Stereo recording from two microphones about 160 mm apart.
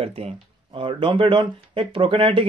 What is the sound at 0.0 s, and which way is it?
Speech, 35° right (ahead or behind).